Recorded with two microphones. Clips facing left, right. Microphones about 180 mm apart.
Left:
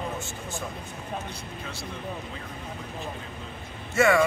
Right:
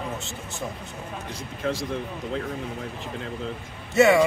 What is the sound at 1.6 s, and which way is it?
Speech, 90° right.